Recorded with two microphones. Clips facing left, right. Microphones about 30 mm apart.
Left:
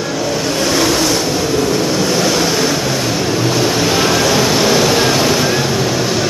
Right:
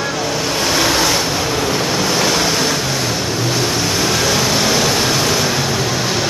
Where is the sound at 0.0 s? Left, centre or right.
Centre.